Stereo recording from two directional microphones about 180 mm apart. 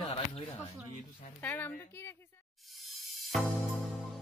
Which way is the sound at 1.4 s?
10° left (ahead or behind).